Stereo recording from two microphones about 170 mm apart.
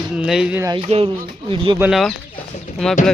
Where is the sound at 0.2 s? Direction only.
5° right (ahead or behind).